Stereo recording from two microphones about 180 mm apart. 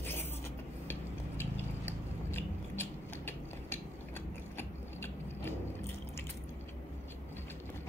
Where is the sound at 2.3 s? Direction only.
10° left (ahead or behind).